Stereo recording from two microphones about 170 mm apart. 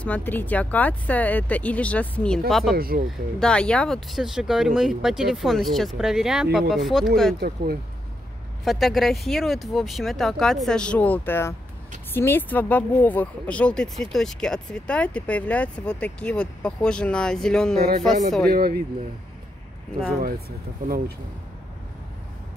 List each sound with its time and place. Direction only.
0.0 s speech: 10° left (ahead or behind)
2.7 s speech: 60° right (ahead or behind)
3.1 s speech: 5° left (ahead or behind)
7.3 s speech: 65° right (ahead or behind)
8.6 s speech: centre (ahead or behind)
18.5 s speech: 65° right (ahead or behind)
20.2 s speech: 65° right (ahead or behind)